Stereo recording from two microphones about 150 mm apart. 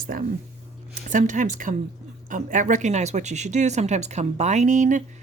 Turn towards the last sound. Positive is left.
turn(degrees=-55)  # may be behind; listen again after turning